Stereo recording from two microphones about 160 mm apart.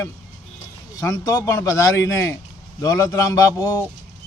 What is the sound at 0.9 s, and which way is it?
Speech, 20° left (ahead or behind).